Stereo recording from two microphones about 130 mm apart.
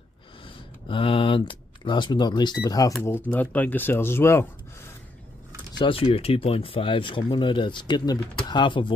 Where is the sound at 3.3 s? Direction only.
10° left (ahead or behind).